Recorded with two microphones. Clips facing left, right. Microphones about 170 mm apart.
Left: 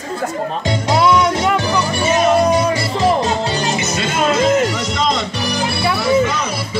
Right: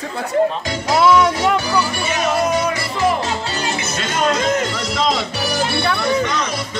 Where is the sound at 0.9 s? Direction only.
Centre (ahead or behind).